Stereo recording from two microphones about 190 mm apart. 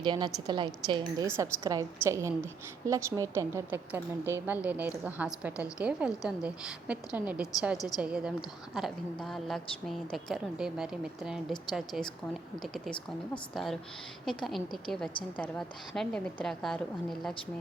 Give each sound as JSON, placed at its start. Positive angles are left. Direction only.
{"t": 0.0, "sound": "a woman's voice", "side_deg": -25}